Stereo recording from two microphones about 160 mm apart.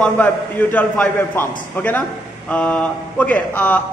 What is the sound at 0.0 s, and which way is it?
A man's voice, 10° left (ahead or behind).